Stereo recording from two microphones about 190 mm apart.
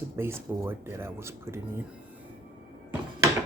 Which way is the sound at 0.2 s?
15° right (ahead or behind).